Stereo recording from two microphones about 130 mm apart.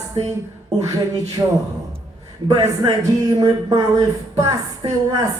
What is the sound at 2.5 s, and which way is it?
Speech, 25° right (ahead or behind).